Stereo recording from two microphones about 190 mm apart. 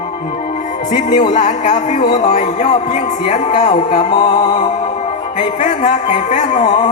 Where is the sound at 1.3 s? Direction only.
40° left (ahead or behind).